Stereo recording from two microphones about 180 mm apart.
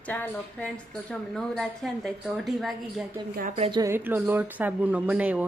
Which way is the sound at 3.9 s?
10° right (ahead or behind).